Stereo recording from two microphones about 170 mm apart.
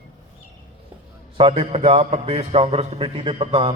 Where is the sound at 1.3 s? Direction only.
35° right (ahead or behind).